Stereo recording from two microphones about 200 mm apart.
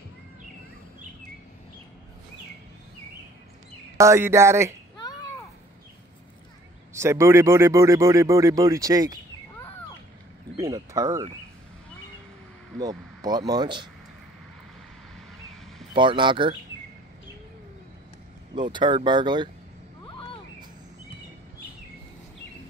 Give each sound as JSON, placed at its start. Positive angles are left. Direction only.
{"t": 4.0, "sound": "a man's voice", "side_deg": -15}
{"t": 6.9, "sound": "a man's voice", "side_deg": -15}
{"t": 10.6, "sound": "a man's voice", "side_deg": -15}
{"t": 12.8, "sound": "speech", "side_deg": -20}
{"t": 15.9, "sound": "speech", "side_deg": -25}
{"t": 18.5, "sound": "speech", "side_deg": -25}